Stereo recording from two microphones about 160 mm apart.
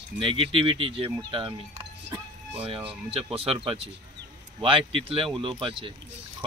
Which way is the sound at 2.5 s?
35° right (ahead or behind).